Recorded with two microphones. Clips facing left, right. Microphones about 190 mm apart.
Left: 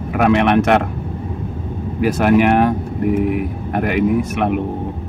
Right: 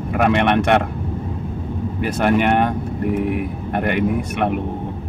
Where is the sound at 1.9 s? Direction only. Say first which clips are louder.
Left 4 dB; 5° left (ahead or behind).